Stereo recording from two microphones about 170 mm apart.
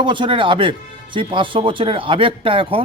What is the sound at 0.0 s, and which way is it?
A man's voice, 30° right (ahead or behind).